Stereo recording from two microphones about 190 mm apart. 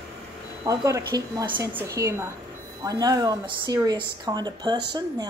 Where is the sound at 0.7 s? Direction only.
15° right (ahead or behind).